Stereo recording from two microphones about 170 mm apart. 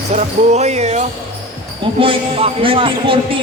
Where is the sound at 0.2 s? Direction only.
40° right (ahead or behind).